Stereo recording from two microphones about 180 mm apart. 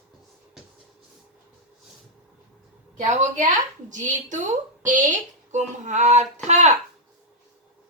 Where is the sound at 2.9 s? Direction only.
40° right (ahead or behind).